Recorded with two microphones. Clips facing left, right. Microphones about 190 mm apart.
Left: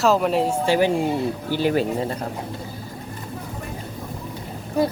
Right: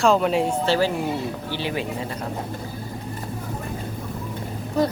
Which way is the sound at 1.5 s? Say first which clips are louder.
Left 9 dB; 45° left (ahead or behind).